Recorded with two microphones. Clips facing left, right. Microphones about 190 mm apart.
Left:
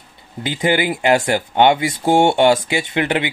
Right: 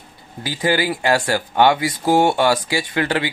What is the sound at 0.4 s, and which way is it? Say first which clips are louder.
Speech: left 2 dB; 20° left (ahead or behind).